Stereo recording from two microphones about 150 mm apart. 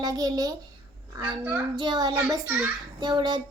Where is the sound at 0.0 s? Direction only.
25° right (ahead or behind).